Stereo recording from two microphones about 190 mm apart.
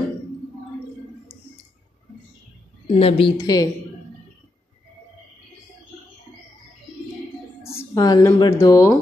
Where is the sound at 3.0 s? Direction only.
25° left (ahead or behind).